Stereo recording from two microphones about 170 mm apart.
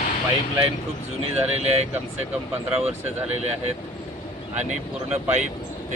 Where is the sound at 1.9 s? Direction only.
10° right (ahead or behind).